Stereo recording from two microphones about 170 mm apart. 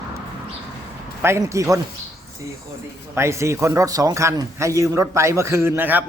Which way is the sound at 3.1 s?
15° right (ahead or behind).